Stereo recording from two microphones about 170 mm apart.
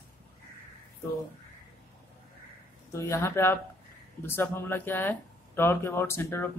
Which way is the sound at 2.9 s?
15° left (ahead or behind).